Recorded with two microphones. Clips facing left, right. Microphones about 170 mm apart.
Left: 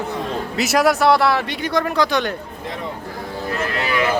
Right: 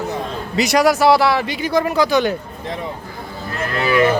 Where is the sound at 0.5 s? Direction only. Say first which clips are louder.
Right 2 dB; centre (ahead or behind).